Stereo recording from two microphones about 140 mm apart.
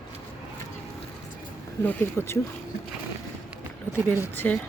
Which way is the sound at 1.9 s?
10° left (ahead or behind).